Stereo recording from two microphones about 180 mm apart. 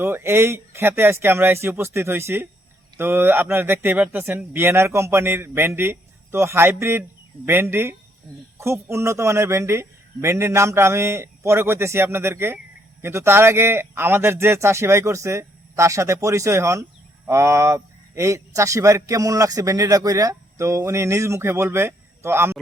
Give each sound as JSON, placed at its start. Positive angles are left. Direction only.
{"t": 0.0, "sound": "a man's voice", "side_deg": -15}